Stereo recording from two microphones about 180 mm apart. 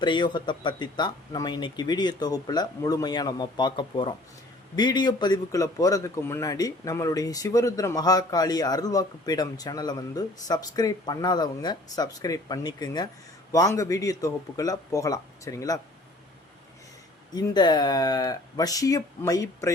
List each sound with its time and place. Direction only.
0.0 s a man's voice: 25° left (ahead or behind)
17.3 s a man's voice: 25° left (ahead or behind)